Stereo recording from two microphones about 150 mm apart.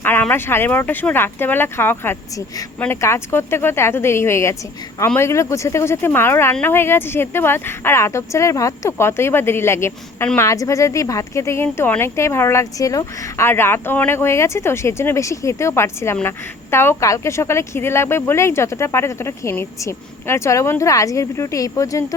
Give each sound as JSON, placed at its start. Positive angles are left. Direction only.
{"t": 0.0, "sound": "speech", "side_deg": 15}